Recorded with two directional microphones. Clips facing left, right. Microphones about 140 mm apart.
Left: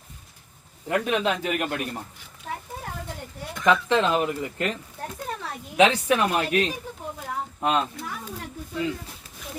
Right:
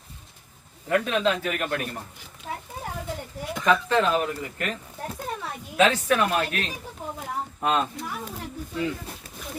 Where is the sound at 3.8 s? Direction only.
20° left (ahead or behind).